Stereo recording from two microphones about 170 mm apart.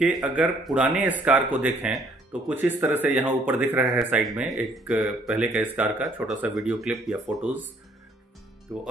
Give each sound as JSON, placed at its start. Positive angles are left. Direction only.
{"t": 0.0, "sound": "speech", "side_deg": -5}
{"t": 8.7, "sound": "speech", "side_deg": -5}